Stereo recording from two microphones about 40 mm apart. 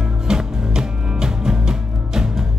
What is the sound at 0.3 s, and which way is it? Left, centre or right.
Music, centre.